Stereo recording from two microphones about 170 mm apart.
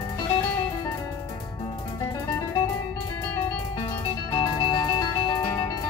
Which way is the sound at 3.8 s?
30° left (ahead or behind).